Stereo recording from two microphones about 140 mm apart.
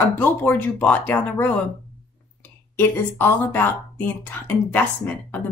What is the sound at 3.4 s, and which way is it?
A woman's voice, 15° left (ahead or behind).